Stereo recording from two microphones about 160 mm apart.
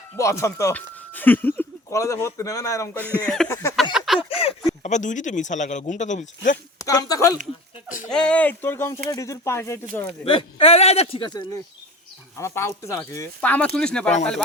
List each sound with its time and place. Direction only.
0.2 s speech: 20° left (ahead or behind)
3.0 s speech: 5° left (ahead or behind)
3.5 s speech: 20° left (ahead or behind)
3.9 s a sound: centre (ahead or behind)
4.2 s speech: 35° left (ahead or behind); by 6.6 s 50° left (ahead or behind)
6.7 s speech: 20° left (ahead or behind)
8.1 s speech: 5° left (ahead or behind)
10.2 s speech: 35° left (ahead or behind)
12.4 s speech: 15° left (ahead or behind)